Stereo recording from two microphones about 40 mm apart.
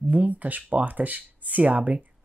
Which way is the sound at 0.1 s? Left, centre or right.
Right.